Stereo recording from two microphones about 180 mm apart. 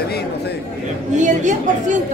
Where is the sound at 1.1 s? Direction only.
40° right (ahead or behind).